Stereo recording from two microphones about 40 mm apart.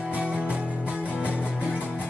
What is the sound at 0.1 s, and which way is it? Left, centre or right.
Music, right.